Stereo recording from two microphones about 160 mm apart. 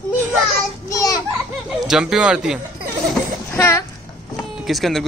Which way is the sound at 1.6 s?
5° right (ahead or behind).